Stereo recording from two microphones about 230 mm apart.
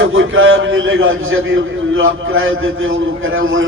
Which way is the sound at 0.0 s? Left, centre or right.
Right.